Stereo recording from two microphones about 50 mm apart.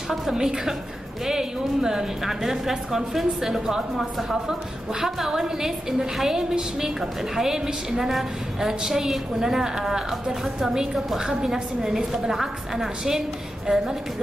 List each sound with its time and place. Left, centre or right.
0.1 s a woman's voice: centre